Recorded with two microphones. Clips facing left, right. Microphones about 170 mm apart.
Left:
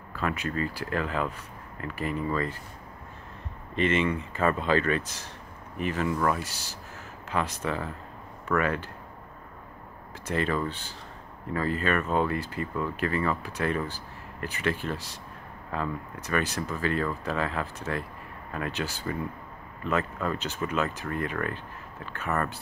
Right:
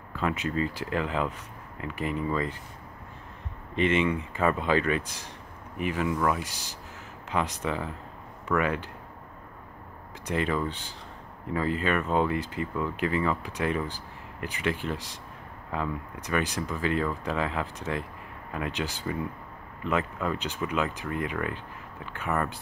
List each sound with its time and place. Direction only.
0.1 s speech: 20° right (ahead or behind)
3.7 s speech: 15° right (ahead or behind)
10.2 s speech: 15° right (ahead or behind)